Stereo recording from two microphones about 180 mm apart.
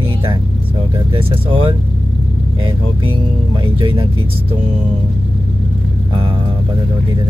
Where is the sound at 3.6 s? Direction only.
30° right (ahead or behind).